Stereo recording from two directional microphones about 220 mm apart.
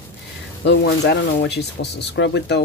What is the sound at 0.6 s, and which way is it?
Speech, 50° left (ahead or behind).